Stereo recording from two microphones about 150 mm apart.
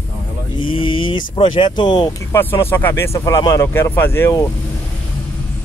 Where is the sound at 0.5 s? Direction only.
35° left (ahead or behind).